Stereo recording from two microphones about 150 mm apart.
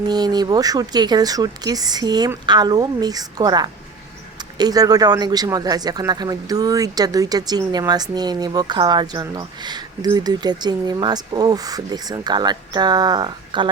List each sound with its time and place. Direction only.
0.1 s speech: 25° right (ahead or behind)